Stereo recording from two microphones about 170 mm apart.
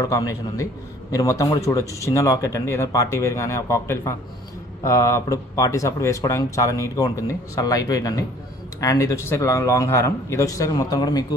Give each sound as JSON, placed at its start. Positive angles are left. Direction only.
{"t": 0.0, "sound": "a man's voice", "side_deg": 20}